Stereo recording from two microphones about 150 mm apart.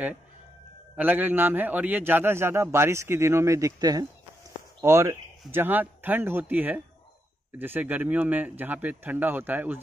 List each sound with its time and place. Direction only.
0.9 s a man's voice: 10° right (ahead or behind)